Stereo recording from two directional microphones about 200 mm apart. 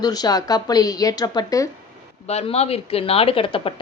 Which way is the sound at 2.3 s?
30° left (ahead or behind).